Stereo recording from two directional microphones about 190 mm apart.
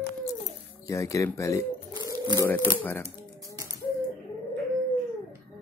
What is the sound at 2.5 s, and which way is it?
Speech, 10° left (ahead or behind).